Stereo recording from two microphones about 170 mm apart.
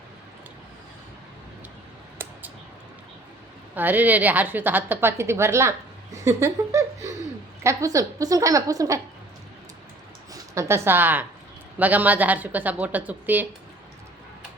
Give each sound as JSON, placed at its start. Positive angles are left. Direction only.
{"t": 3.8, "sound": "a woman's voice", "side_deg": -10}
{"t": 6.2, "sound": "a sound", "side_deg": -20}
{"t": 7.6, "sound": "a woman's voice", "side_deg": -15}
{"t": 10.3, "sound": "a woman's voice", "side_deg": -15}